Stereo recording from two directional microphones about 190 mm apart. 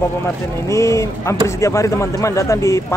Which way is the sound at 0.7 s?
15° left (ahead or behind).